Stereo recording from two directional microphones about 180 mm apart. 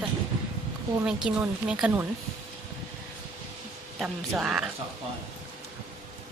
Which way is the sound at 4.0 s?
Centre (ahead or behind).